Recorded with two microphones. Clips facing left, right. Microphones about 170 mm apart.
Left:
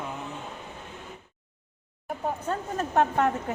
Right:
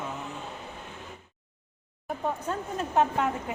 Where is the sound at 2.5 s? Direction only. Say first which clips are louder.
Left 2 dB; 45° left (ahead or behind).